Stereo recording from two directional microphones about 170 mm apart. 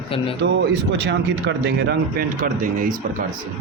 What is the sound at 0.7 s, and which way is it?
Speech, 85° right.